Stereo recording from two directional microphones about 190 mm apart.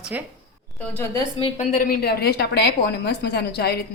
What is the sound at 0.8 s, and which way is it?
Speech, 10° left (ahead or behind).